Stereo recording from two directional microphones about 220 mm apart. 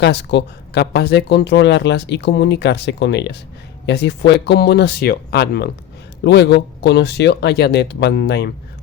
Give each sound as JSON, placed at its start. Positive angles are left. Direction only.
{"t": 0.0, "sound": "speech", "side_deg": 50}